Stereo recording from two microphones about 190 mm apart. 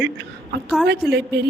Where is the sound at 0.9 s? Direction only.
60° right (ahead or behind).